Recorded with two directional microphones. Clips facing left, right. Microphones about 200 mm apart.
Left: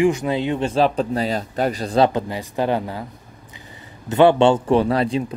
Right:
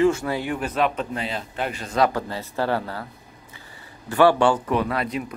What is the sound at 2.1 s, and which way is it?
Speech, 20° left (ahead or behind).